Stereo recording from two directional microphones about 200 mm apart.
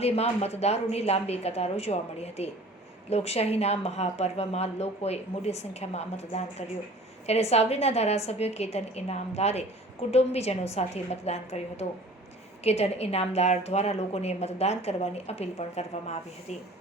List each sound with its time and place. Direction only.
0.0 s a woman's voice: 30° left (ahead or behind)